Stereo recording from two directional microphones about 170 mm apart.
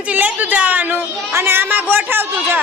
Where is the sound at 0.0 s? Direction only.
10° right (ahead or behind).